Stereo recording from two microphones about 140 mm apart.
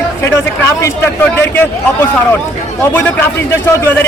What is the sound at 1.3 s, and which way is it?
Speech, 15° left (ahead or behind).